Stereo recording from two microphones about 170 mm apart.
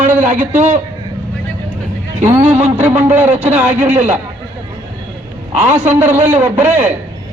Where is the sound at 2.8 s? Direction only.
5° right (ahead or behind).